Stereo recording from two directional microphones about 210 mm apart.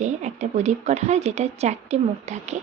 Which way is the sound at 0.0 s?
35° right (ahead or behind).